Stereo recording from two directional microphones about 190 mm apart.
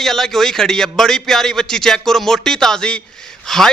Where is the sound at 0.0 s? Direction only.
Centre (ahead or behind).